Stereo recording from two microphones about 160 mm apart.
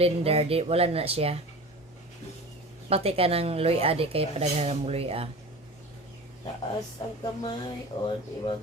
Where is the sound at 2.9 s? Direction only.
40° right (ahead or behind).